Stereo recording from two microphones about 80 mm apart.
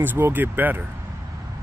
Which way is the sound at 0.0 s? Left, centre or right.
Right.